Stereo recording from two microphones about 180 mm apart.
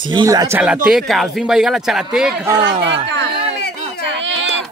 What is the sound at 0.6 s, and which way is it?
Speech, 5° right (ahead or behind).